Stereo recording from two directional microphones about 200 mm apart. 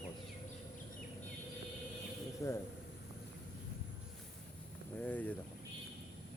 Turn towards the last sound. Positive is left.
turn(degrees=5)  # may be behind; listen again after turning